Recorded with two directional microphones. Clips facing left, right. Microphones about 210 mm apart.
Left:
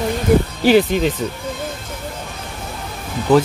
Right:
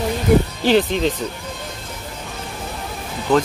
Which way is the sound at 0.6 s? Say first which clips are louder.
Left 3 dB; 10° left (ahead or behind).